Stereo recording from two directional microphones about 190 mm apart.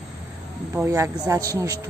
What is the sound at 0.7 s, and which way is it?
Speech, 15° right (ahead or behind).